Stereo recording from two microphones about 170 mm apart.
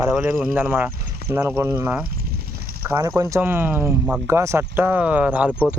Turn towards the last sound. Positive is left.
turn(degrees=-10)  # may be behind; listen again after turning